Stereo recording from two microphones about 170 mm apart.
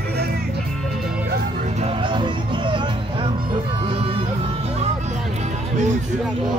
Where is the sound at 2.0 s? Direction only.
30° right (ahead or behind).